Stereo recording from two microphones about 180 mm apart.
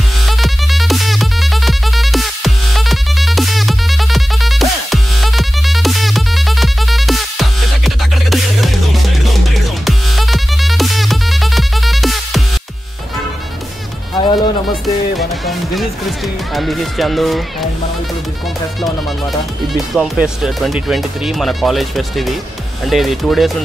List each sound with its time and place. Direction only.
0.3 s music: centre (ahead or behind)
14.1 s music: 25° left (ahead or behind)
15.1 s music: centre (ahead or behind)
16.5 s speech: centre (ahead or behind)
19.7 s speech: centre (ahead or behind)